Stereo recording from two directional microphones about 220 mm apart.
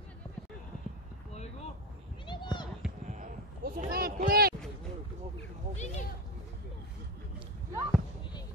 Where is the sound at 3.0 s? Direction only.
35° right (ahead or behind).